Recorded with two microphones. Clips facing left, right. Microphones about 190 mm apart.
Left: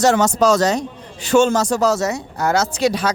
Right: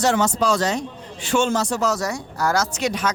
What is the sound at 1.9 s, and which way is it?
Speech, 25° left (ahead or behind).